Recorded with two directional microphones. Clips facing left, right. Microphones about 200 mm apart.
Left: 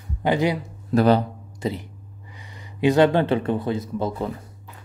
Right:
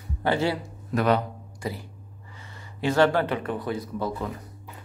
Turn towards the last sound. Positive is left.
turn(degrees=25)  # may be behind; listen again after turning